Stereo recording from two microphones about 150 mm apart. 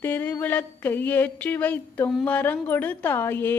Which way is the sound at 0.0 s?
10° left (ahead or behind).